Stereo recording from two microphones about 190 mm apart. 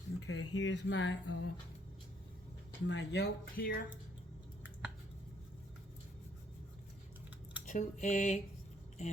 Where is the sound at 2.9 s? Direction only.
60° left (ahead or behind).